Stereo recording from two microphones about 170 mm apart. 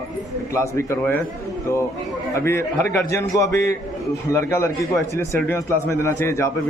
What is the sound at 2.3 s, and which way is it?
A man's voice, 15° left (ahead or behind).